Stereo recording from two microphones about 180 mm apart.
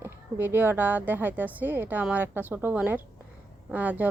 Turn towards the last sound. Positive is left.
turn(degrees=-10)  # may be behind; listen again after turning